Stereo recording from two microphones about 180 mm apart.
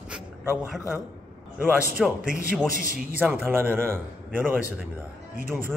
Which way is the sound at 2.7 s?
50° right (ahead or behind).